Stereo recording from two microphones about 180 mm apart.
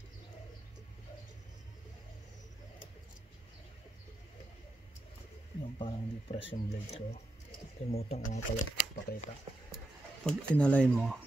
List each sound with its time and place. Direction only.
5.8 s speech: 30° left (ahead or behind)
10.2 s speech: 5° left (ahead or behind)